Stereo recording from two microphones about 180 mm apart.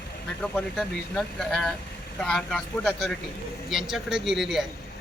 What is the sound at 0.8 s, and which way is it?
Speech, 5° left (ahead or behind).